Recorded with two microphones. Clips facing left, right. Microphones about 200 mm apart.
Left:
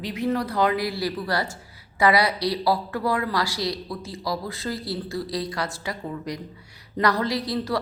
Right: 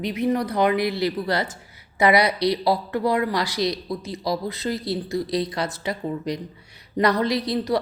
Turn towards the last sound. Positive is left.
turn(degrees=-20)  # may be behind; listen again after turning